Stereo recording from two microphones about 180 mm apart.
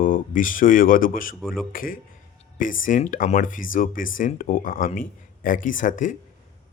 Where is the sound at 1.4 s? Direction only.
Centre (ahead or behind).